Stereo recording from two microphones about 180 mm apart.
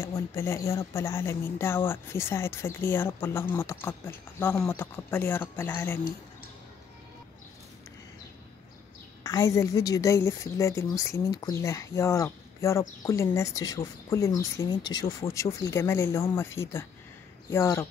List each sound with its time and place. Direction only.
0.0 s speech: 15° left (ahead or behind)
9.2 s speech: 15° left (ahead or behind)